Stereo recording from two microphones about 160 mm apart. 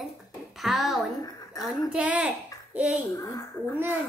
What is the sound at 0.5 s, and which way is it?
A woman's voice, centre (ahead or behind).